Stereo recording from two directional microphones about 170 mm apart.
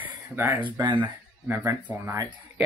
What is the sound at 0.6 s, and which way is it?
Speech, 30° right (ahead or behind).